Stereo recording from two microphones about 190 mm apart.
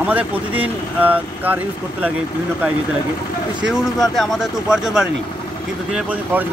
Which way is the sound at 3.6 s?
Centre (ahead or behind).